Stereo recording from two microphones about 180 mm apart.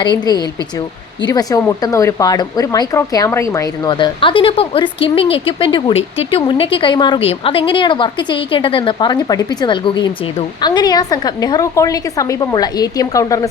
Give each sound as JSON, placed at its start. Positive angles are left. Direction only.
{"t": 0.0, "sound": "speech", "side_deg": 25}